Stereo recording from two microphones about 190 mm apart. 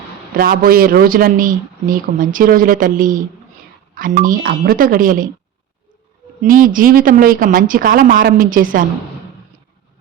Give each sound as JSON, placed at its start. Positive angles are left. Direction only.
{"t": 0.3, "sound": "speech", "side_deg": -50}
{"t": 6.4, "sound": "speech", "side_deg": -45}